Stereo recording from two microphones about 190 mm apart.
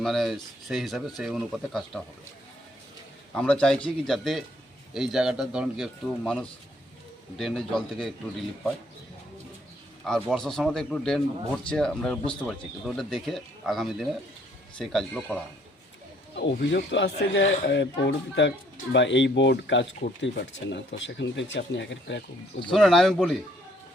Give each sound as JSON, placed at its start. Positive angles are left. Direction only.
{"t": 0.0, "sound": "a man's voice", "side_deg": 0}
{"t": 3.3, "sound": "a man's voice", "side_deg": 5}
{"t": 10.0, "sound": "a man's voice", "side_deg": 0}
{"t": 16.4, "sound": "speech", "side_deg": 65}
{"t": 22.7, "sound": "a man's voice", "side_deg": 0}